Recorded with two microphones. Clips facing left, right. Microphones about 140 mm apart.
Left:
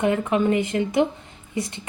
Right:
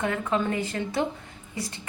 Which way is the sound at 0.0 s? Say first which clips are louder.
Left 6 dB; 20° left (ahead or behind).